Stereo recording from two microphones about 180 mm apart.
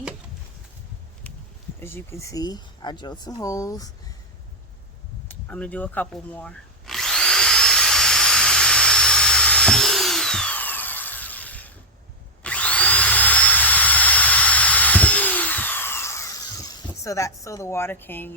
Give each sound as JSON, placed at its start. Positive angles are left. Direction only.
{"t": 1.8, "sound": "speech", "side_deg": 15}
{"t": 5.3, "sound": "drill", "side_deg": 10}
{"t": 17.0, "sound": "a woman's voice", "side_deg": 15}